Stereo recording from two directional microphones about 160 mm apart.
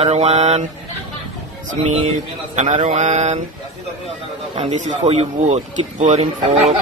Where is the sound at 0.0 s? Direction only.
40° right (ahead or behind).